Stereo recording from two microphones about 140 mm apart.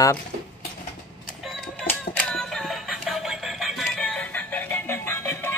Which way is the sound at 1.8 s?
5° left (ahead or behind).